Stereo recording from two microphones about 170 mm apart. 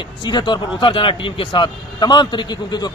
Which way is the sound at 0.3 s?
25° left (ahead or behind).